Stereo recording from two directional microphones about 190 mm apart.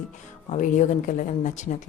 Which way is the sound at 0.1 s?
40° left (ahead or behind).